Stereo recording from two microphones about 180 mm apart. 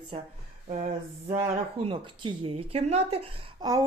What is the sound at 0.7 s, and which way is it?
Speech, 40° right (ahead or behind).